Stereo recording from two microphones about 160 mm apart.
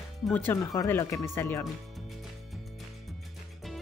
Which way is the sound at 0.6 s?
15° left (ahead or behind).